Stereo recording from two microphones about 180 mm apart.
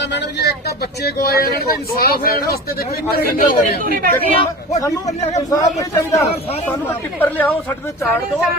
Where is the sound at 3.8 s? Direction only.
50° right (ahead or behind).